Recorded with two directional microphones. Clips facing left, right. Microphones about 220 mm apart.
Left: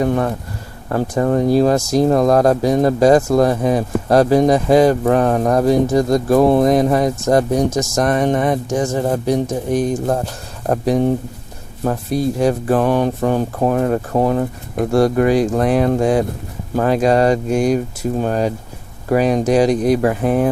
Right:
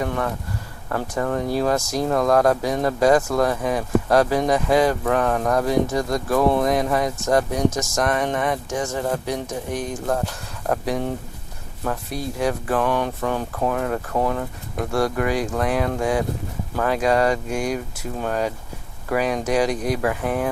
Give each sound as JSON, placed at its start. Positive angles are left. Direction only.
{"t": 0.0, "sound": "speech", "side_deg": 30}
{"t": 12.4, "sound": "speech", "side_deg": 30}